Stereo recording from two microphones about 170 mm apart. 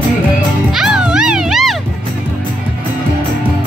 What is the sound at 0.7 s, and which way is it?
Music, 5° right (ahead or behind).